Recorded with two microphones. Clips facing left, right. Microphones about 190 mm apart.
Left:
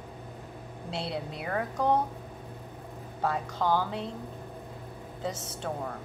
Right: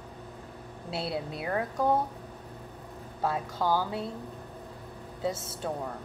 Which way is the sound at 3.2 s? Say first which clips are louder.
Even; 5° right (ahead or behind).